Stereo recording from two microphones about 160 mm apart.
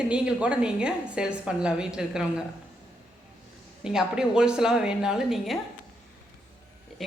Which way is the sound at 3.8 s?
5° right (ahead or behind).